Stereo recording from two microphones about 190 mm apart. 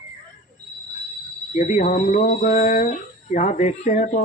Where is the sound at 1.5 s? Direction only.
40° left (ahead or behind).